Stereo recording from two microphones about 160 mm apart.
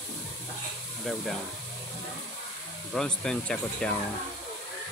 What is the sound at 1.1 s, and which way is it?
Speech, 5° left (ahead or behind).